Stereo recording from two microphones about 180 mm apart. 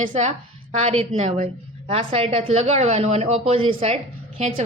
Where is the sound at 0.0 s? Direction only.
40° right (ahead or behind).